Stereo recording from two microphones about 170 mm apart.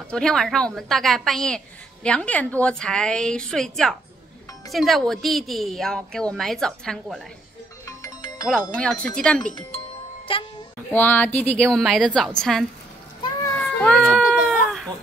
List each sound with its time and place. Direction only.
0.1 s a woman's voice: 5° left (ahead or behind)
7.8 s music: 20° left (ahead or behind)
8.5 s speech: 5° left (ahead or behind)
10.3 s a woman's voice: 30° left (ahead or behind)
10.9 s a woman's voice: 10° left (ahead or behind)
13.6 s baby cry: 5° left (ahead or behind)